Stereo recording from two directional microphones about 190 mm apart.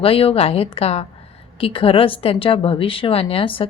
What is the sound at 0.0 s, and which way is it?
A woman's voice, 30° left (ahead or behind).